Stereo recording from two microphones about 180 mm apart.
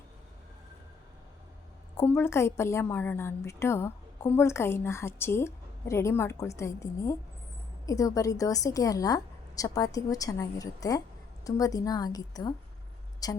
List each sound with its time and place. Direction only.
2.0 s a woman's voice: 15° left (ahead or behind)